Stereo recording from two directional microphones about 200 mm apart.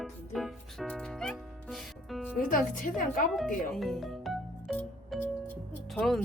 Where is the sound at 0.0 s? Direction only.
Centre (ahead or behind).